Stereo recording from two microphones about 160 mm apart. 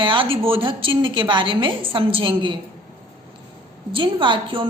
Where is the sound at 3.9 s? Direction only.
30° right (ahead or behind).